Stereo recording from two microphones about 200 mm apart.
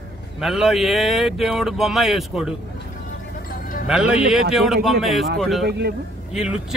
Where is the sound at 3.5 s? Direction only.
45° left (ahead or behind).